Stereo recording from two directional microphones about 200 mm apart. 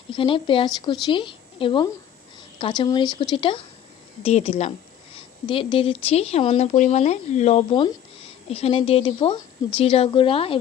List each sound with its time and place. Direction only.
0.1 s a woman's voice: 25° left (ahead or behind)